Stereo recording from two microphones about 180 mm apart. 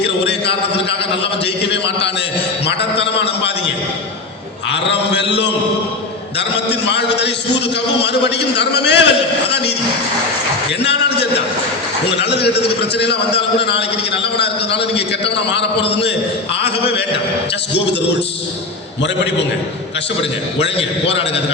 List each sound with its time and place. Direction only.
0.0 s a man's voice: 70° left (ahead or behind)
4.7 s a man's voice: 70° left (ahead or behind)
6.7 s a man's voice: 70° left (ahead or behind)
12.1 s a man's voice: 70° left (ahead or behind)